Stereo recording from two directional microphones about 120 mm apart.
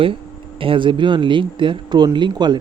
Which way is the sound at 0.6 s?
45° right (ahead or behind).